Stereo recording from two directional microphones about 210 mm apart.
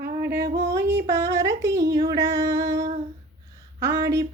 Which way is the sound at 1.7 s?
55° right (ahead or behind).